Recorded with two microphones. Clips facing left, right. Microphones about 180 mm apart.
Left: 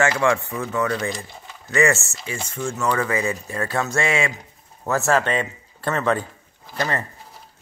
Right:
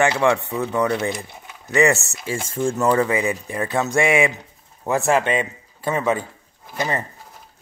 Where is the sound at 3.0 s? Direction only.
15° right (ahead or behind).